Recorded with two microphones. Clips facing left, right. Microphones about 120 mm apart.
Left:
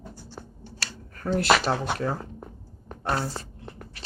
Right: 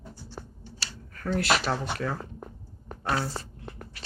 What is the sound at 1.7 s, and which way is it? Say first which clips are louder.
Speech: left 4 dB; 55° left (ahead or behind).